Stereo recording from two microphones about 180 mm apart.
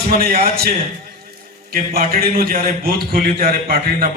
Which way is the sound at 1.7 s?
55° right (ahead or behind).